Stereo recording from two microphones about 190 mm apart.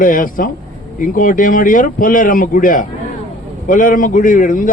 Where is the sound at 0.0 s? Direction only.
45° left (ahead or behind).